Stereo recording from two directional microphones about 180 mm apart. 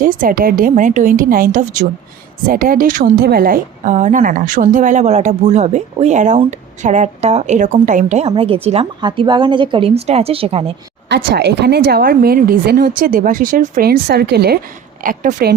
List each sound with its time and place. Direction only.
0.0 s a woman's voice: 50° right (ahead or behind); by 10.8 s 30° right (ahead or behind)
11.3 s speech: 65° right (ahead or behind)
15.0 s a woman's voice: 50° right (ahead or behind)